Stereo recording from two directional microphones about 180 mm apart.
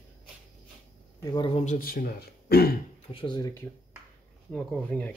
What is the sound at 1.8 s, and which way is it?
Speech, 55° left (ahead or behind).